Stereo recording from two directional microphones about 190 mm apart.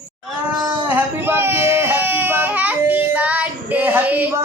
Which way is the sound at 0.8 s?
10° right (ahead or behind).